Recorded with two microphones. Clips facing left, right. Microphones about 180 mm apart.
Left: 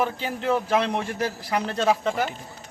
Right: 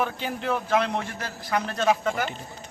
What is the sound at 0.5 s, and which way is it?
Speech, 30° left (ahead or behind).